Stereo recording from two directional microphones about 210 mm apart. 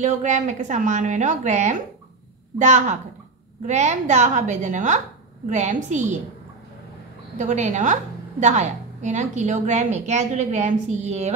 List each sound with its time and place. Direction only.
0.0 s a woman's voice: 35° right (ahead or behind)
7.3 s a woman's voice: 35° right (ahead or behind)